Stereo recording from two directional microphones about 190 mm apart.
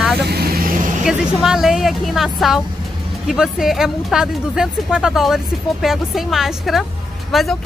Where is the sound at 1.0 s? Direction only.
Centre (ahead or behind).